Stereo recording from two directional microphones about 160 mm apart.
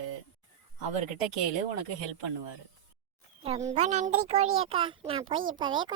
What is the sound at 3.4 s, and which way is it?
A child's voice, 40° right (ahead or behind).